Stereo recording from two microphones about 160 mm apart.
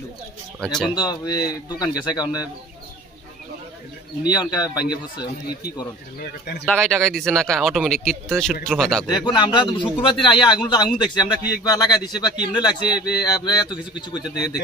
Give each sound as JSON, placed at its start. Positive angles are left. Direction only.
{"t": 0.9, "sound": "a man's voice", "side_deg": 25}
{"t": 4.3, "sound": "a man's voice", "side_deg": 25}
{"t": 6.6, "sound": "speech", "side_deg": 5}
{"t": 9.0, "sound": "a man's voice", "side_deg": 25}